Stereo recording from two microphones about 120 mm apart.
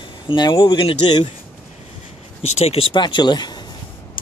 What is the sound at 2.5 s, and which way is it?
Speech, 60° left (ahead or behind).